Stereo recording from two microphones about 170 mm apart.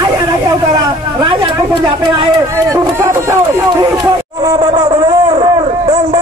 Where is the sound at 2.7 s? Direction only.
20° right (ahead or behind).